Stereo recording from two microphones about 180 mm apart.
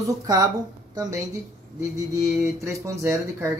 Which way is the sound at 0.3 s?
20° right (ahead or behind).